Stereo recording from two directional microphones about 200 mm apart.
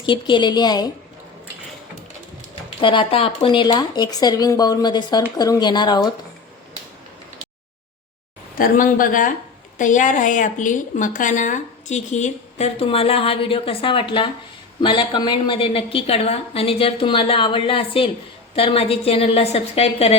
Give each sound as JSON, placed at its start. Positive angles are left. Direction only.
{"t": 0.0, "sound": "a woman's voice", "side_deg": 25}
{"t": 2.8, "sound": "a woman's voice", "side_deg": 25}
{"t": 8.5, "sound": "a woman's voice", "side_deg": 45}